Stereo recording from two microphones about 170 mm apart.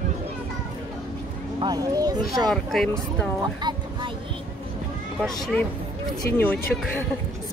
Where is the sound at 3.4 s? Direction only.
25° right (ahead or behind).